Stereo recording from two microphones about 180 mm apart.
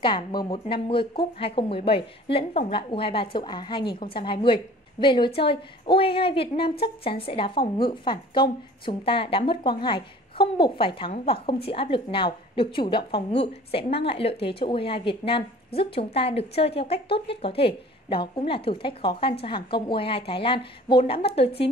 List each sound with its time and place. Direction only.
0.0 s a woman's voice: 25° left (ahead or behind)